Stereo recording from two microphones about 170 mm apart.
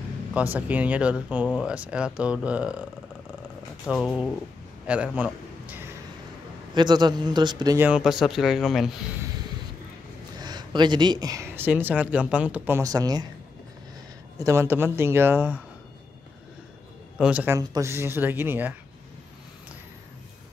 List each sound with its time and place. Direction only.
0.3 s speech: 10° right (ahead or behind)
3.8 s speech: 5° right (ahead or behind)
4.8 s a sound: 5° right (ahead or behind)
6.7 s speech: 25° right (ahead or behind)
7.8 s speech: 5° right (ahead or behind)
10.4 s speech: 25° right (ahead or behind)
14.4 s speech: 15° right (ahead or behind)
17.2 s speech: 10° right (ahead or behind)